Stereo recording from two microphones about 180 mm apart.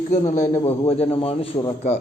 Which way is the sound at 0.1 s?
40° left (ahead or behind).